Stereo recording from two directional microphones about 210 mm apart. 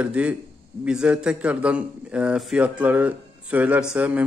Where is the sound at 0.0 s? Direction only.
5° right (ahead or behind).